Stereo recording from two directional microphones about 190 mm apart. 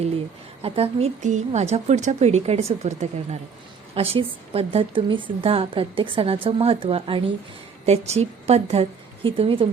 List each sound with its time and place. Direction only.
0.6 s a woman's voice: 30° right (ahead or behind)